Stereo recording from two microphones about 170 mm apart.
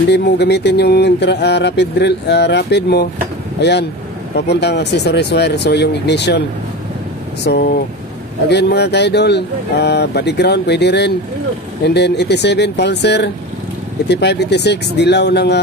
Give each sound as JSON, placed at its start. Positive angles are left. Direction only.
{"t": 0.1, "sound": "speech", "side_deg": 80}
{"t": 4.4, "sound": "speech", "side_deg": 75}
{"t": 7.4, "sound": "speech", "side_deg": 70}
{"t": 8.5, "sound": "speech", "side_deg": 80}